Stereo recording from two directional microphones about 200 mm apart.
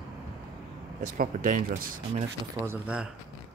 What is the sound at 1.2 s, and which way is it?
Speech, 45° right (ahead or behind).